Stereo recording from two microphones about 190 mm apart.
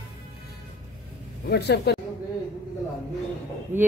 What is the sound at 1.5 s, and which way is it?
Speech, 60° left (ahead or behind).